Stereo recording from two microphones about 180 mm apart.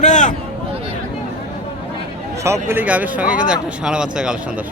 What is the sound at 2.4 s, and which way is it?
Speech, 15° right (ahead or behind).